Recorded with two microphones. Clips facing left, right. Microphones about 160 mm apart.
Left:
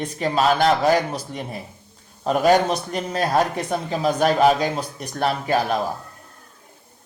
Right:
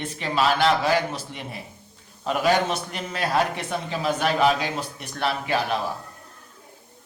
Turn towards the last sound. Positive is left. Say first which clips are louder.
# left 3 dB
turn(degrees=40)  # may be behind; listen again after turning